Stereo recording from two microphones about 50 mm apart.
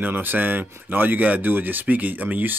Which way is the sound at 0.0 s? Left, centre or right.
Right.